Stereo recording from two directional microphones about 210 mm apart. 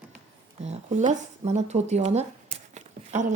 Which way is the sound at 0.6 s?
30° right (ahead or behind).